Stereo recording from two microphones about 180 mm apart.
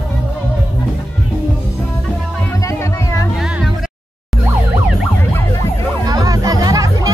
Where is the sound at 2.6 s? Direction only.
15° left (ahead or behind).